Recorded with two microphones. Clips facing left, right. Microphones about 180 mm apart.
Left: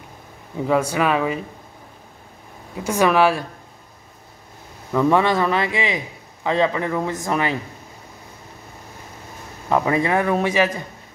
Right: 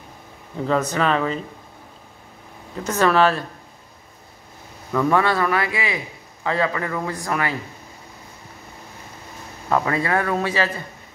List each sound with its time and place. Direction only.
0.7 s speech: 10° left (ahead or behind)
2.7 s speech: 10° left (ahead or behind)
4.9 s a man's voice: 20° left (ahead or behind)
9.7 s speech: 15° left (ahead or behind)